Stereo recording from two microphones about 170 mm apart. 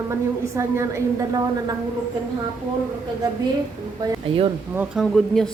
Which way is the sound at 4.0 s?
30° right (ahead or behind).